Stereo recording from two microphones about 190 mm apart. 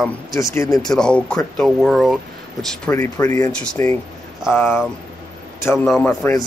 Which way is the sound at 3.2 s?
15° left (ahead or behind).